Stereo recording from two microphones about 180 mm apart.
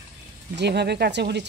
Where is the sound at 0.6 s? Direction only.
70° right (ahead or behind).